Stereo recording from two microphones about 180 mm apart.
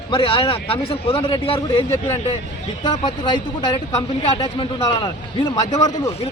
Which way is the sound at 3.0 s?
25° left (ahead or behind).